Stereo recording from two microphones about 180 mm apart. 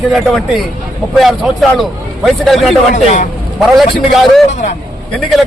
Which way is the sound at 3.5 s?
Centre (ahead or behind).